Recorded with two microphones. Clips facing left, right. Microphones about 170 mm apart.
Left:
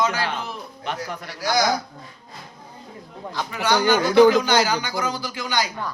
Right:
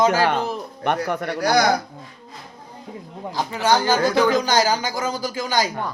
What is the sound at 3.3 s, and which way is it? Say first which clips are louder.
A man's voice: right 3 dB; 40° right (ahead or behind).